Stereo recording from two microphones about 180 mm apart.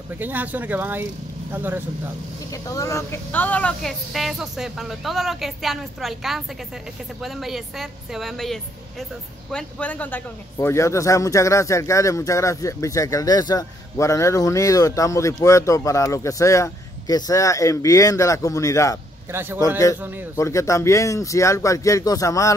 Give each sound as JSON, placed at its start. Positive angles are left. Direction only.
{"t": 0.2, "sound": "speech", "side_deg": -10}
{"t": 2.5, "sound": "a man's voice", "side_deg": 20}
{"t": 20.3, "sound": "a man's voice", "side_deg": 15}